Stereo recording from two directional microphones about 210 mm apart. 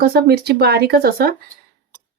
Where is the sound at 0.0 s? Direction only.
45° right (ahead or behind).